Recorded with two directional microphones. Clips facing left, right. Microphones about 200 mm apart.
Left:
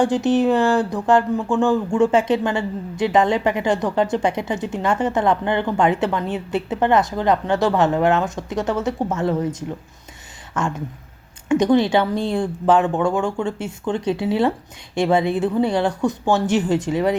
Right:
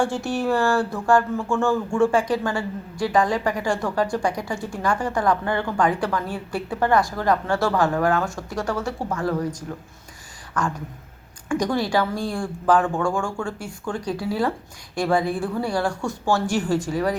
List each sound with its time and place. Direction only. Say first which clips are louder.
0.0 s speech: left 6 dB; 20° left (ahead or behind)